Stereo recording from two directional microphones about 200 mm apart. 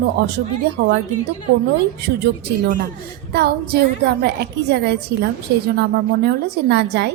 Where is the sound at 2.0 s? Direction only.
50° right (ahead or behind).